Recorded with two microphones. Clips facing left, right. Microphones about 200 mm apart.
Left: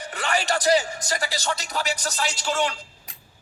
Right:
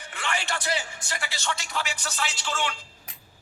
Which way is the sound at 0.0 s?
40° left (ahead or behind).